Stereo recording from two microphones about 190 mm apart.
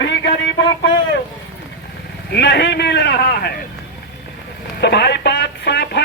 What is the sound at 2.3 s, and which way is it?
A man's voice, 60° left (ahead or behind).